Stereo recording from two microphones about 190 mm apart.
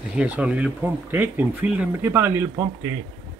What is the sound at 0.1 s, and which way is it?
Speech, 5° right (ahead or behind).